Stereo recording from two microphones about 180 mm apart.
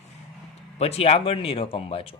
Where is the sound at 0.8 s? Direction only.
35° left (ahead or behind).